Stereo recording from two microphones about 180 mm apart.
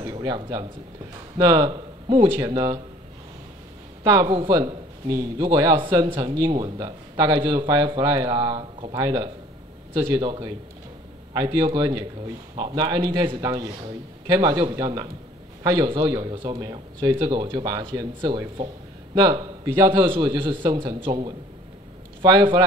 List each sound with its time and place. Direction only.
0.0 s a man's voice: 25° right (ahead or behind)
4.0 s a man's voice: 20° right (ahead or behind)